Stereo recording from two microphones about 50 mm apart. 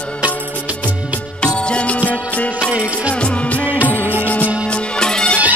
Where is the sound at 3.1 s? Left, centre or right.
Left.